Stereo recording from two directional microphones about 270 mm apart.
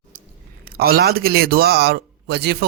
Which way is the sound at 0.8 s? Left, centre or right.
Right.